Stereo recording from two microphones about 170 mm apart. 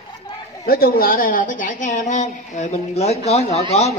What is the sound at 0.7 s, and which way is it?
A woman's voice, 60° left (ahead or behind).